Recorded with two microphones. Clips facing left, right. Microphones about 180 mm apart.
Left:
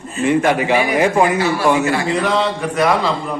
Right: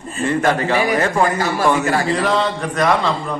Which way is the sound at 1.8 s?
40° right (ahead or behind).